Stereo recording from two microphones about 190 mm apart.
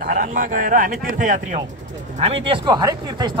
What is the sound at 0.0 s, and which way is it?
Speech, 45° right (ahead or behind).